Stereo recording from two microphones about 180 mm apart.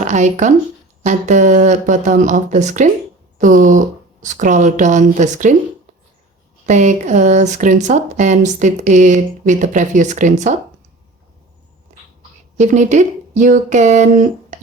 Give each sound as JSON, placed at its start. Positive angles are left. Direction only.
{"t": 0.0, "sound": "speech", "side_deg": -40}
{"t": 6.7, "sound": "speech", "side_deg": -40}
{"t": 12.5, "sound": "speech", "side_deg": -40}